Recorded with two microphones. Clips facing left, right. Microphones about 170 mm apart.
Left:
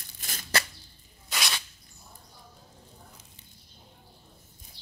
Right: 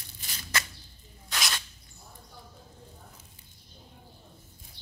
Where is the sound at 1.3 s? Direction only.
5° left (ahead or behind).